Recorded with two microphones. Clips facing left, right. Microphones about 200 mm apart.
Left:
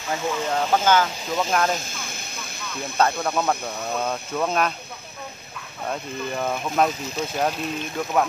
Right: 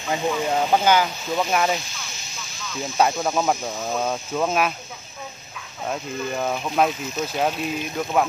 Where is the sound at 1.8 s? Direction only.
55° left (ahead or behind).